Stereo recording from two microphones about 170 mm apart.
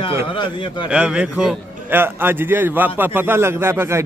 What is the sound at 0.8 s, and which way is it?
A man's voice, 5° right (ahead or behind).